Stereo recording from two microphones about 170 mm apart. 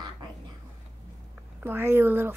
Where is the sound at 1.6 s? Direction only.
15° right (ahead or behind).